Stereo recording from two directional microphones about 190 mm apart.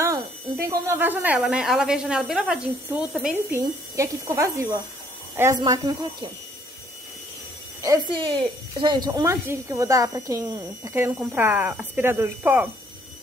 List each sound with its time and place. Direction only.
0.0 s speech: 15° right (ahead or behind)
3.5 s speech: 15° right (ahead or behind)
7.8 s speech: 20° right (ahead or behind)